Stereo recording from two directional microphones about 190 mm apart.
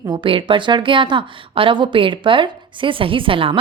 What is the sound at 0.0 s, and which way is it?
A woman's voice, 25° right (ahead or behind).